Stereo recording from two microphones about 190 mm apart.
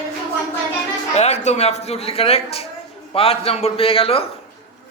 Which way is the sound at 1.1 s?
35° left (ahead or behind).